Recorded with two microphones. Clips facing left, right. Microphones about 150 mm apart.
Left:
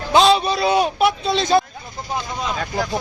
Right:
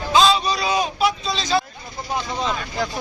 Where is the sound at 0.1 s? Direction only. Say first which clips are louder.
Left 3 dB; 65° left (ahead or behind).